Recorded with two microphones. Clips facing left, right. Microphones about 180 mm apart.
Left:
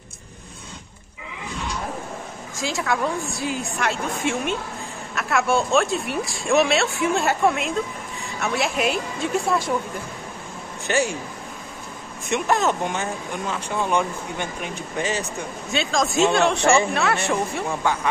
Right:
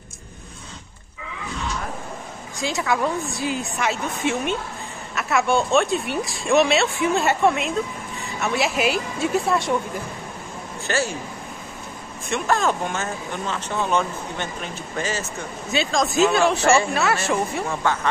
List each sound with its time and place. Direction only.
2.6 s a woman's voice: centre (ahead or behind)
10.9 s speech: 15° left (ahead or behind)
12.3 s speech: 20° left (ahead or behind)
15.7 s speech: centre (ahead or behind)